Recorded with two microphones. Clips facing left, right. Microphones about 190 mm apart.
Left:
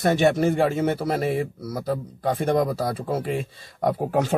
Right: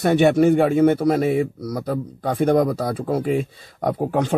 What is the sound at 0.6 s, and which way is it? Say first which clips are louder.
Speech: right 6 dB; 60° right (ahead or behind).